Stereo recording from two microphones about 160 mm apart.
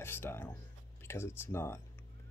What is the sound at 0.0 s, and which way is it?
Speech, 15° left (ahead or behind).